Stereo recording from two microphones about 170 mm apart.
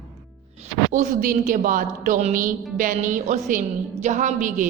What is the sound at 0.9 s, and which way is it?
A woman's voice, 50° right (ahead or behind).